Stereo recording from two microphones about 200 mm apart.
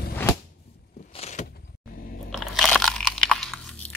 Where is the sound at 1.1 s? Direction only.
35° left (ahead or behind).